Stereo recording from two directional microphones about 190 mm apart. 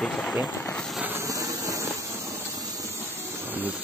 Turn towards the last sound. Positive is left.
turn(degrees=-10)  # may be behind; listen again after turning